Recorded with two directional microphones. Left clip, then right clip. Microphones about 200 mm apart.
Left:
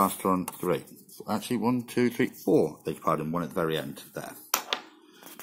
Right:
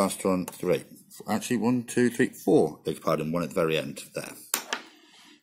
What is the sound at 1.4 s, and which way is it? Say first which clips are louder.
Speech: right 1 dB; 40° right (ahead or behind).